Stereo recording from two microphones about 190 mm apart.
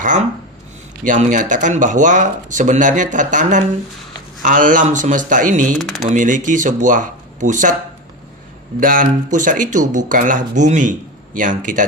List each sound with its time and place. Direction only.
0.0 s speech: 40° right (ahead or behind)
5.7 s speech: centre (ahead or behind)
6.1 s speech: 45° right (ahead or behind)
8.8 s speech: 45° right (ahead or behind)